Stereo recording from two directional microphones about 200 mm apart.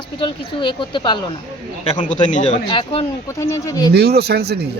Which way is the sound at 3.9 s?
55° right (ahead or behind).